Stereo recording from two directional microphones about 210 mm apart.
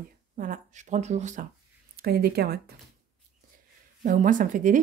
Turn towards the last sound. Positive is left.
turn(degrees=-40)  # may be behind; listen again after turning